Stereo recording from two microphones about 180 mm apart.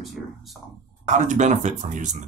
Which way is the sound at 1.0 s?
45° right (ahead or behind).